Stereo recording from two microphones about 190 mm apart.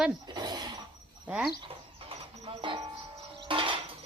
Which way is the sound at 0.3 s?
20° right (ahead or behind).